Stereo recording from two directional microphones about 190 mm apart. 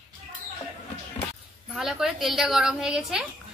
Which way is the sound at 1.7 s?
Centre (ahead or behind).